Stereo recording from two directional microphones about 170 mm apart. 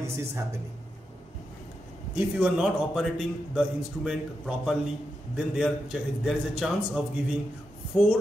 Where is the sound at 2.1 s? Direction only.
5° right (ahead or behind).